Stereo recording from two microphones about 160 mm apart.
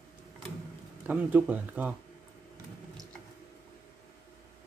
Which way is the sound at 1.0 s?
10° right (ahead or behind).